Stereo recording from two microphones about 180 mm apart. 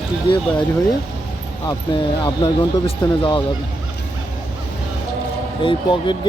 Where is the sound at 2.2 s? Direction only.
20° left (ahead or behind).